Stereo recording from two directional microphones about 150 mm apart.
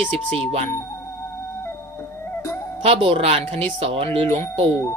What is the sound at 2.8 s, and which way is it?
Music, 40° right (ahead or behind).